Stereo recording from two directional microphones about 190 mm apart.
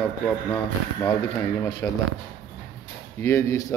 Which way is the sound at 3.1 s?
15° left (ahead or behind).